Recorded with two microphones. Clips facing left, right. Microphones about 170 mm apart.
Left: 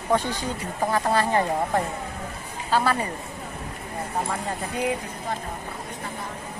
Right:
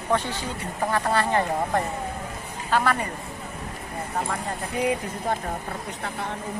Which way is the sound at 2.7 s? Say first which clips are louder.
Even; 10° left (ahead or behind).